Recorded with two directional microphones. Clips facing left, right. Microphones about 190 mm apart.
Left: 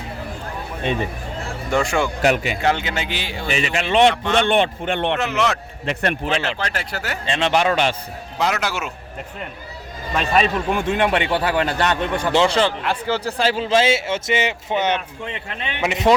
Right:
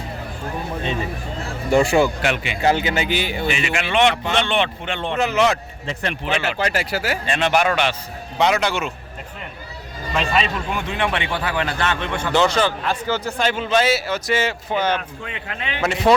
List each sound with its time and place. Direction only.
1.7 s speech: 5° right (ahead or behind)
2.2 s speech: 40° left (ahead or behind)
2.6 s speech: 5° right (ahead or behind)
3.5 s speech: 35° left (ahead or behind)
4.1 s speech: 5° right (ahead or behind)
4.4 s a man's voice: 50° left (ahead or behind)
5.2 s speech: centre (ahead or behind)
5.8 s speech: 65° left (ahead or behind)
6.2 s speech: 5° right (ahead or behind)
7.3 s a man's voice: 25° left (ahead or behind)
8.4 s speech: centre (ahead or behind)
10.3 s a man's voice: 45° left (ahead or behind)
12.3 s a man's voice: 25° left (ahead or behind)